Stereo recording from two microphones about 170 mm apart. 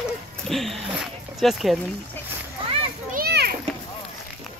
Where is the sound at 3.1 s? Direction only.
65° right (ahead or behind).